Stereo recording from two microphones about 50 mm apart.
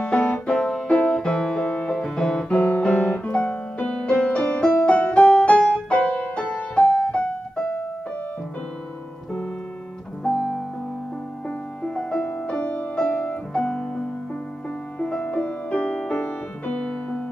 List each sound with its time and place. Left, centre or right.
0.1 s music: left; by 2.4 s centre
2.5 s piano: left
3.9 s music: left
10.2 s music: centre
11.4 s music: centre
13.2 s piano: left
15.0 s music: centre